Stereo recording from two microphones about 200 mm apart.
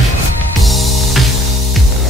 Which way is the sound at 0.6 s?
Centre (ahead or behind).